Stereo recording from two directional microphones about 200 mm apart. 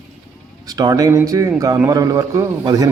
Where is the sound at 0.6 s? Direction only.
20° right (ahead or behind).